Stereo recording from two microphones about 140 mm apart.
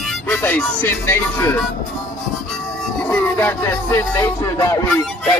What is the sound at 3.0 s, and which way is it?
Music, 15° left (ahead or behind).